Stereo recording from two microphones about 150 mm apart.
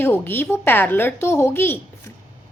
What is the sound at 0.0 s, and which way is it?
A woman's voice, 15° left (ahead or behind).